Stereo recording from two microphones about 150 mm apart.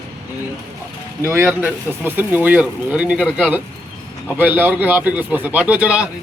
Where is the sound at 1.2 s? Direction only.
15° right (ahead or behind).